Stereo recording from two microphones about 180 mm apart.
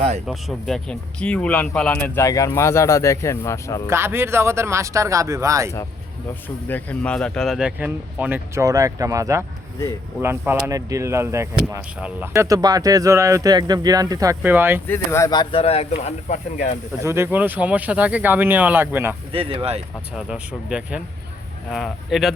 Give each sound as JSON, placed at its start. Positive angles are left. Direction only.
{"t": 0.3, "sound": "speech", "side_deg": 0}
{"t": 3.8, "sound": "speech", "side_deg": -15}
{"t": 6.7, "sound": "speech", "side_deg": 10}
{"t": 14.8, "sound": "speech", "side_deg": 15}
{"t": 17.0, "sound": "speech", "side_deg": -15}
{"t": 19.3, "sound": "speech", "side_deg": -30}
{"t": 20.1, "sound": "speech", "side_deg": -5}